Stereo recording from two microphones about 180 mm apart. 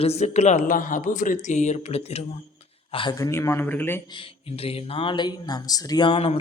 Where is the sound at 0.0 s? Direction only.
35° left (ahead or behind); by 4.0 s 10° left (ahead or behind).